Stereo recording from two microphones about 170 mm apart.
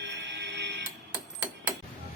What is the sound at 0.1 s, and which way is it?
Printer, 90° right.